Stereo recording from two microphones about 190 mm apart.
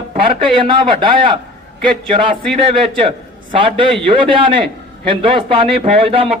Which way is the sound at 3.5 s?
25° right (ahead or behind).